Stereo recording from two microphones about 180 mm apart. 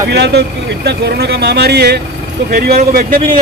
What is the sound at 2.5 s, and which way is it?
Speech, 55° right (ahead or behind).